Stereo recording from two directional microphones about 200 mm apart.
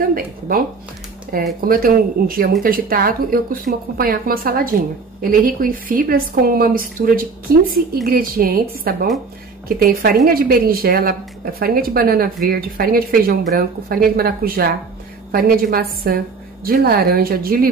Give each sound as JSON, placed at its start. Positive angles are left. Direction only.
{"t": 0.1, "sound": "a woman's voice", "side_deg": -45}